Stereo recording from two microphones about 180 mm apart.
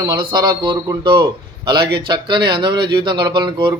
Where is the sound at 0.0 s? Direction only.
25° right (ahead or behind).